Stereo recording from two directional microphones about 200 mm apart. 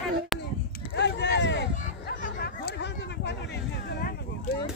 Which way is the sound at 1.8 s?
40° left (ahead or behind).